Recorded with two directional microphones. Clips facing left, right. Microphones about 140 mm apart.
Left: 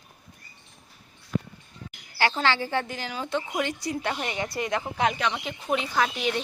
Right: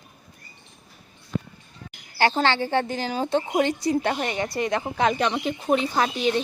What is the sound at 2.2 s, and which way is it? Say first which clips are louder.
Speech: right 3 dB; 30° right (ahead or behind).